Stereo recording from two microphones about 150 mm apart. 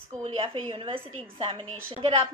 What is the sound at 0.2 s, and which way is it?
A woman's voice, 35° right (ahead or behind).